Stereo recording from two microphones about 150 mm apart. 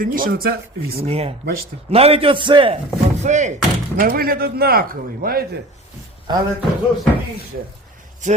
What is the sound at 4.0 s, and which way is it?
Speech, 80° right.